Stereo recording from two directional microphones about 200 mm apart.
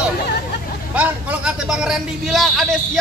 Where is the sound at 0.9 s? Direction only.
5° right (ahead or behind).